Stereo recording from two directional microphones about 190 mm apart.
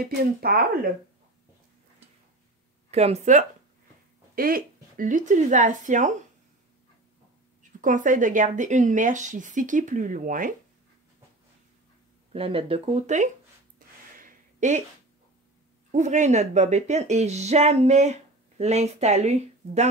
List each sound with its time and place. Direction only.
0.0 s a woman's voice: 55° right (ahead or behind)
2.9 s speech: 35° right (ahead or behind)
4.4 s speech: 50° right (ahead or behind)
7.8 s a woman's voice: 45° right (ahead or behind)
12.3 s speech: 30° right (ahead or behind)
13.8 s gasp: 45° right (ahead or behind)
14.1 s a sound: 45° right (ahead or behind)
15.9 s speech: 40° right (ahead or behind)